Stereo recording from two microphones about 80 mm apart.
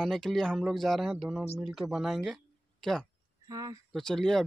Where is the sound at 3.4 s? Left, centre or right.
Right.